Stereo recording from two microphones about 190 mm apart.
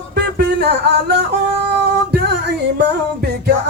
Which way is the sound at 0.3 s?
60° right (ahead or behind).